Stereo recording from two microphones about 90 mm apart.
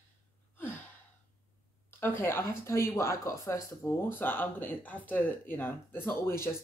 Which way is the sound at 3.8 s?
25° left (ahead or behind).